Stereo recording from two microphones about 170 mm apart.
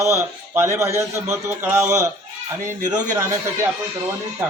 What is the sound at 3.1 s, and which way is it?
Speech, 15° right (ahead or behind).